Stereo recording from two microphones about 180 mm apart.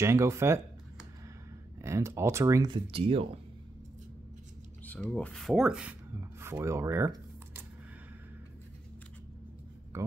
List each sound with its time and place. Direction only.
0.0 s speech: 15° right (ahead or behind)
1.8 s speech: 15° right (ahead or behind); by 3.3 s 30° right (ahead or behind)
4.8 s speech: 5° left (ahead or behind); by 7.6 s 15° right (ahead or behind)